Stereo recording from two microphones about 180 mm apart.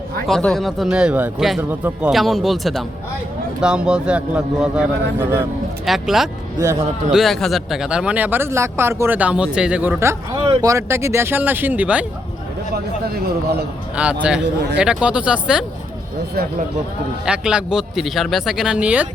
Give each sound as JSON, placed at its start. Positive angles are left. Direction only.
{"t": 0.3, "sound": "speech", "side_deg": 5}
{"t": 10.3, "sound": "speech", "side_deg": -25}
{"t": 10.7, "sound": "speech", "side_deg": -15}
{"t": 13.2, "sound": "a man's voice", "side_deg": -65}
{"t": 13.9, "sound": "speech", "side_deg": -5}
{"t": 17.2, "sound": "speech", "side_deg": -5}